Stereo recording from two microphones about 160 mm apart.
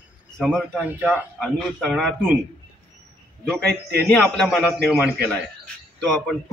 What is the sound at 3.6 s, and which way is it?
Speech, 90° right.